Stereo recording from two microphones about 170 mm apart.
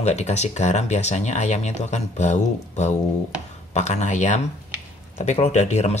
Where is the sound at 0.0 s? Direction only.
40° left (ahead or behind).